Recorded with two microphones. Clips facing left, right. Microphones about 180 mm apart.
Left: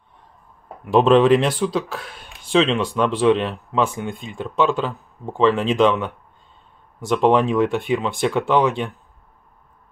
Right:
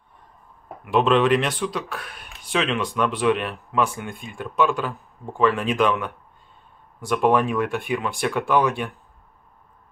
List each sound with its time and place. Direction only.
0.8 s speech: 35° left (ahead or behind)